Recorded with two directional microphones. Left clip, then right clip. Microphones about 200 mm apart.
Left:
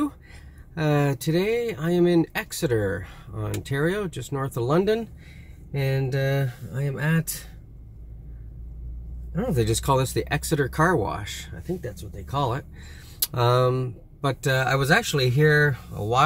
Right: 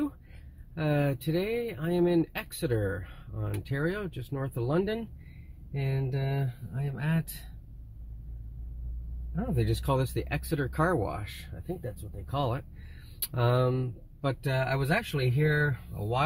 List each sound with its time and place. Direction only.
0.7 s speech: centre (ahead or behind)
6.7 s speech: 30° left (ahead or behind)
9.6 s speech: 5° left (ahead or behind)